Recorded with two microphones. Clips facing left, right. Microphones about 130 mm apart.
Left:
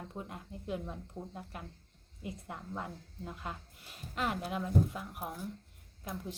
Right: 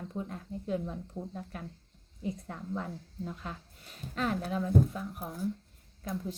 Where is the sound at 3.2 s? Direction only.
10° left (ahead or behind).